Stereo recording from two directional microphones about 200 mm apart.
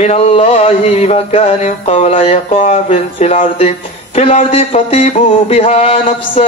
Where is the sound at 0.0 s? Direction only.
30° left (ahead or behind).